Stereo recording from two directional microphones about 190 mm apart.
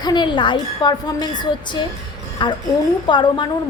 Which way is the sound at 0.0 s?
25° left (ahead or behind).